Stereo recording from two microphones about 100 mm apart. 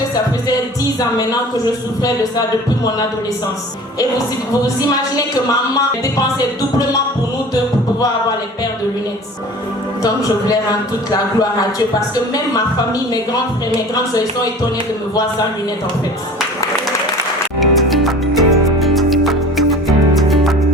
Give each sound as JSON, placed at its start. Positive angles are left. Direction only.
{"t": 4.6, "sound": "speech", "side_deg": 35}
{"t": 10.5, "sound": "speech", "side_deg": 40}
{"t": 17.6, "sound": "music", "side_deg": 0}